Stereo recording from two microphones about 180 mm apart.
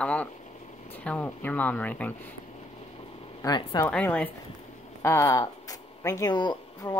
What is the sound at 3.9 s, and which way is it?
A woman's voice, 5° left (ahead or behind).